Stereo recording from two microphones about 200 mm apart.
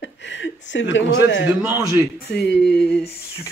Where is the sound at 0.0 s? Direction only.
60° left (ahead or behind).